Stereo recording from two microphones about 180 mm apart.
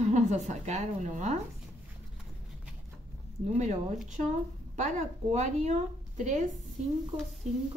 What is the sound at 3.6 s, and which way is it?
A woman's voice, 40° right (ahead or behind).